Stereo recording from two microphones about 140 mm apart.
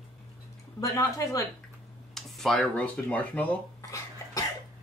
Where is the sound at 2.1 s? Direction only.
Centre (ahead or behind).